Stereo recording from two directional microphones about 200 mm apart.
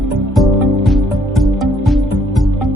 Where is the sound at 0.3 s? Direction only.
Centre (ahead or behind).